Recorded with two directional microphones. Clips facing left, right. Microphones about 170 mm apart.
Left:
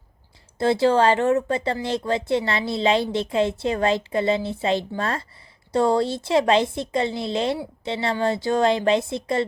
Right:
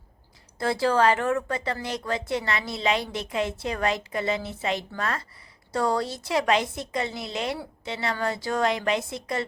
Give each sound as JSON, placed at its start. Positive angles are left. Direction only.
{"t": 0.6, "sound": "a woman's voice", "side_deg": 25}